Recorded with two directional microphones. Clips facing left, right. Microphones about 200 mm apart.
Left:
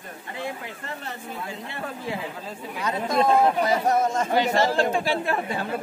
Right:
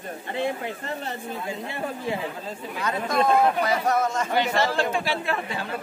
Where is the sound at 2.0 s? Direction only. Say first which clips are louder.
Right 2 dB; centre (ahead or behind).